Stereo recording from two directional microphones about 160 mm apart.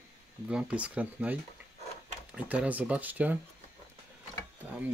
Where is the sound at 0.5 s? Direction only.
5° right (ahead or behind).